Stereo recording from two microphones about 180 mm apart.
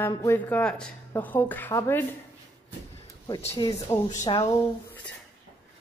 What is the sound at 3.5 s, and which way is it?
Speech, 20° left (ahead or behind).